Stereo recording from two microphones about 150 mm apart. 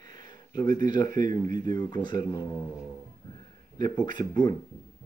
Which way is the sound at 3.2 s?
25° left (ahead or behind).